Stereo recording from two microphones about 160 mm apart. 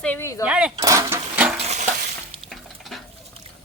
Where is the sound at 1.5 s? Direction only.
40° right (ahead or behind).